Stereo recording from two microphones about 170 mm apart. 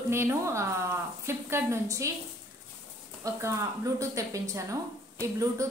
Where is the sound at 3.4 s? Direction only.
15° right (ahead or behind).